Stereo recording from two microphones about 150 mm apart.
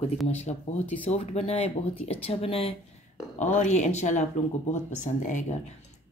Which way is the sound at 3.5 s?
50° left (ahead or behind).